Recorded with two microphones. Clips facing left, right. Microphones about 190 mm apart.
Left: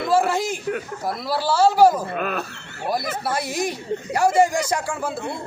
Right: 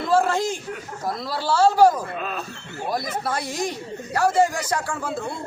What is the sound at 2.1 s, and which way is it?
Speech, 70° left (ahead or behind).